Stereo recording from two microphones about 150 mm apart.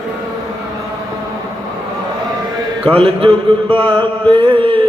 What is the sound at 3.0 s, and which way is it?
Speech, 35° right (ahead or behind).